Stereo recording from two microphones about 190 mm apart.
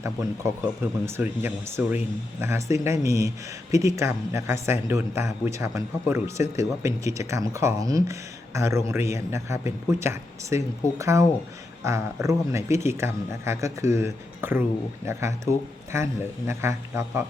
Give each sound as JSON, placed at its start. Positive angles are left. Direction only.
{"t": 0.0, "sound": "speech", "side_deg": -15}